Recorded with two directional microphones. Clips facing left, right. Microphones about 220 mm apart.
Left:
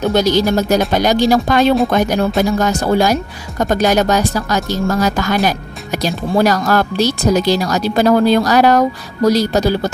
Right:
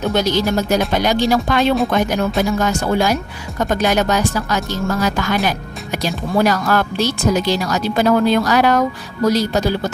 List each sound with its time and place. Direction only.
0.1 s speech: 40° left (ahead or behind)